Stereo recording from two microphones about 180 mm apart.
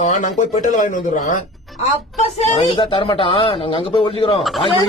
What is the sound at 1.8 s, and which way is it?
Speech, 35° left (ahead or behind).